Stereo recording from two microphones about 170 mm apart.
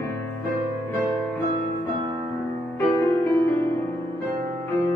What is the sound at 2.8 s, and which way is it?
Music, 10° left (ahead or behind).